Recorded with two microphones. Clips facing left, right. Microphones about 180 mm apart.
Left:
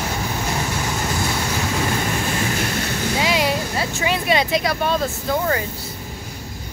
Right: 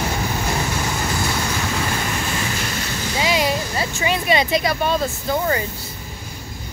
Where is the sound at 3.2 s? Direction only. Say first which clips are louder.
Right 2 dB; centre (ahead or behind).